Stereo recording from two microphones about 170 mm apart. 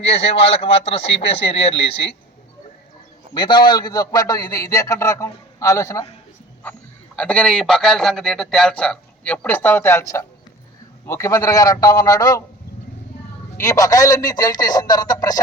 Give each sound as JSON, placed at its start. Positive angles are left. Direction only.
{"t": 0.0, "sound": "speech", "side_deg": 35}
{"t": 3.3, "sound": "a man's voice", "side_deg": 25}
{"t": 7.2, "sound": "a man's voice", "side_deg": 5}
{"t": 13.6, "sound": "a man's voice", "side_deg": 20}